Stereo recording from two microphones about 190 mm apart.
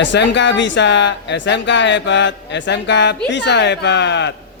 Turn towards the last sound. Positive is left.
turn(degrees=65)  # may be behind; listen again after turning